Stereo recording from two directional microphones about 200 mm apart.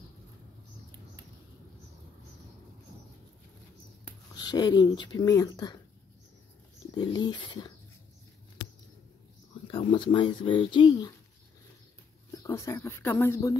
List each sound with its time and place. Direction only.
4.4 s speech: 20° left (ahead or behind)
7.0 s speech: 20° left (ahead or behind)
9.7 s speech: 25° left (ahead or behind)
12.4 s speech: 15° left (ahead or behind)